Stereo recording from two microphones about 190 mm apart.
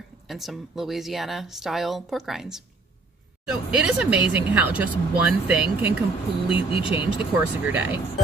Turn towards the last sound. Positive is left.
turn(degrees=-10)  # may be behind; listen again after turning